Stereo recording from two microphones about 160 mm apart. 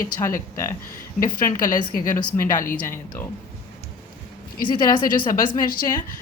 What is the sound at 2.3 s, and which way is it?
Speech, 20° left (ahead or behind).